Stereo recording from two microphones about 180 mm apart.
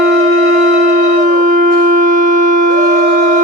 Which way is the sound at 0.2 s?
45° right (ahead or behind).